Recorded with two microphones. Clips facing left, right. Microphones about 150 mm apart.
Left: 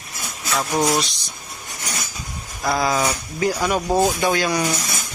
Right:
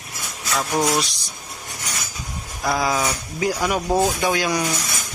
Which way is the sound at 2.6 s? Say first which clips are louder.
Left 1 dB; 10° right (ahead or behind).